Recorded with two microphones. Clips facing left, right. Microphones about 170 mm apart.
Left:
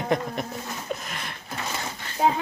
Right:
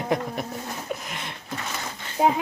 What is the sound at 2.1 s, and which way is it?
Speech, 15° right (ahead or behind).